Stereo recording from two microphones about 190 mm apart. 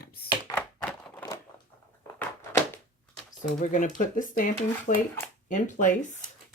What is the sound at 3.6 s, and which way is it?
Speech, 40° left (ahead or behind).